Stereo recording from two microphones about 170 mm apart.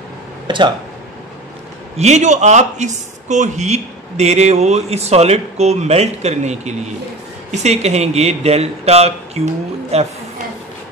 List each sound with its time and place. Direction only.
0.5 s speech: 25° right (ahead or behind)
2.0 s speech: 40° right (ahead or behind)